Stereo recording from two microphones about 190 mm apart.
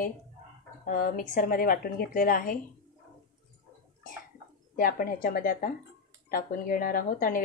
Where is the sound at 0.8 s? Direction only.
50° left (ahead or behind).